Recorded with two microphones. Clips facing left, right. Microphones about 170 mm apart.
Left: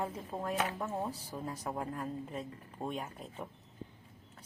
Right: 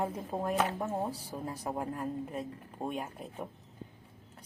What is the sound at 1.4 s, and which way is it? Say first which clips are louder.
Speech: right 2 dB; 10° right (ahead or behind).